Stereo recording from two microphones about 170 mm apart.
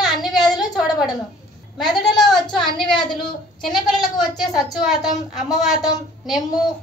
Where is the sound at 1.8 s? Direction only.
Centre (ahead or behind).